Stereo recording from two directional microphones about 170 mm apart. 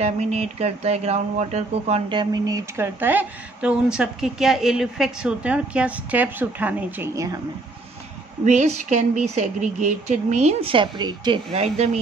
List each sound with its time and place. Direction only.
0.0 s speech: 40° right (ahead or behind); by 7.3 s 15° right (ahead or behind)
8.5 s speech: 45° right (ahead or behind); by 11.6 s 25° right (ahead or behind)
11.6 s speech: 40° right (ahead or behind)